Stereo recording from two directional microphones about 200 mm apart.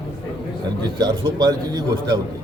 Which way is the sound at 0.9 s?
20° right (ahead or behind).